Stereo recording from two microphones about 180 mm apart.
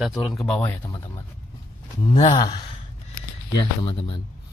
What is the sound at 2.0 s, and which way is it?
Speech, 25° left (ahead or behind).